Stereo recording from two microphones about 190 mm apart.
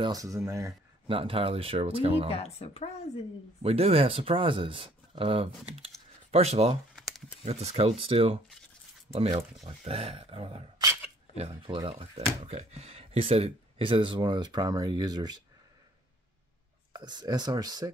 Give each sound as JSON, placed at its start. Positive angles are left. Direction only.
{"t": 0.0, "sound": "speech", "side_deg": -20}
{"t": 1.0, "sound": "speech", "side_deg": -30}
{"t": 2.3, "sound": "a woman's voice", "side_deg": 35}
{"t": 3.6, "sound": "speech", "side_deg": -30}
{"t": 7.0, "sound": "a sound", "side_deg": 0}
{"t": 7.4, "sound": "speech", "side_deg": -35}
{"t": 16.9, "sound": "speech", "side_deg": -20}